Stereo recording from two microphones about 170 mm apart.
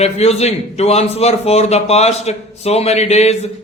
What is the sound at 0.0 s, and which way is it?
A man's voice, 40° left (ahead or behind).